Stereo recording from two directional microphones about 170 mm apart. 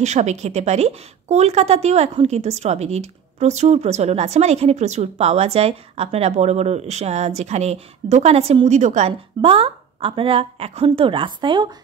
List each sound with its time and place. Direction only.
0.0 s a woman's voice: 45° right (ahead or behind); by 11.7 s 25° right (ahead or behind)